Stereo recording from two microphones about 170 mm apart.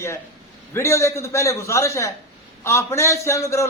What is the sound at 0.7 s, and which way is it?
A man's voice, 15° left (ahead or behind).